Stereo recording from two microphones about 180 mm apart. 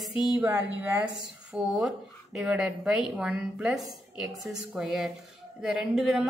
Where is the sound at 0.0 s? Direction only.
5° right (ahead or behind).